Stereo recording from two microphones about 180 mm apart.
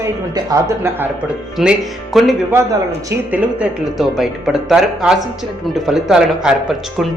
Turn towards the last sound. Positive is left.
turn(degrees=-5)  # may be behind; listen again after turning